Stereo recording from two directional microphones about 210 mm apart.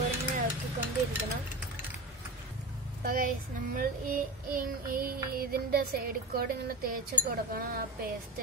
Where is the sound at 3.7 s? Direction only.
40° right (ahead or behind).